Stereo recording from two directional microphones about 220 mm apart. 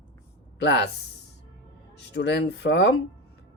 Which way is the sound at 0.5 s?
50° left (ahead or behind).